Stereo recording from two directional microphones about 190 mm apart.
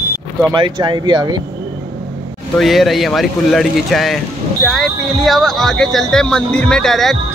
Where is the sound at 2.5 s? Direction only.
Centre (ahead or behind).